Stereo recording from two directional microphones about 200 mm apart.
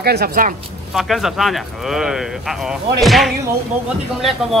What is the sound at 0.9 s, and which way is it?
Speech, centre (ahead or behind).